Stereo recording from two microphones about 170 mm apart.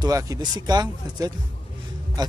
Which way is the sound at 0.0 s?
20° right (ahead or behind).